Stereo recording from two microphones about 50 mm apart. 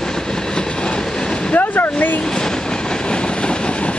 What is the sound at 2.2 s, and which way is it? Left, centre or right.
Train, centre.